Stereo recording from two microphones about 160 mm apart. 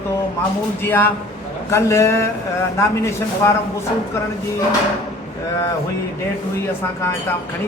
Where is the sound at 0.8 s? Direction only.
15° left (ahead or behind).